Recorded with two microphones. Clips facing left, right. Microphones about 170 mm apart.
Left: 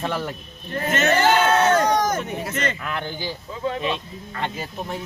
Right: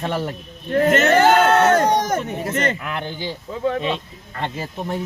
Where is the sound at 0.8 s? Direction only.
60° right (ahead or behind).